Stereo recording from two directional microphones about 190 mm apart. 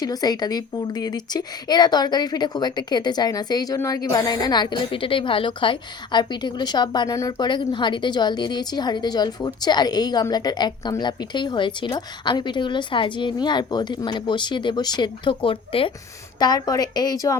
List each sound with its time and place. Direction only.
0.0 s a woman's voice: 20° left (ahead or behind)